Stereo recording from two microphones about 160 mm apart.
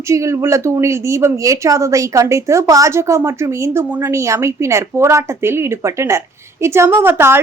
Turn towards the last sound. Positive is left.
turn(degrees=-15)  # may be behind; listen again after turning